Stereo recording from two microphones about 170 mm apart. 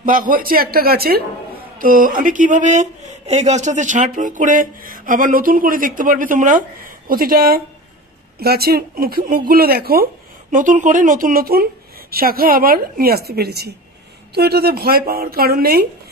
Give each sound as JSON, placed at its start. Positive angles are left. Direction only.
{"t": 0.0, "sound": "speech", "side_deg": -55}
{"t": 10.5, "sound": "a woman's voice", "side_deg": -50}